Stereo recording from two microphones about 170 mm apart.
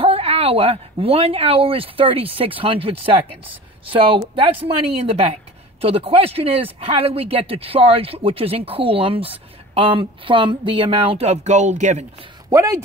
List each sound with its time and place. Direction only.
0.0 s speech: 35° right (ahead or behind)
12.4 s speech: 20° right (ahead or behind)